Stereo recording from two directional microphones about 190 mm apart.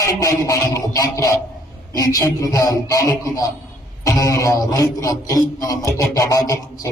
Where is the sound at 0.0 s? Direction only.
15° left (ahead or behind).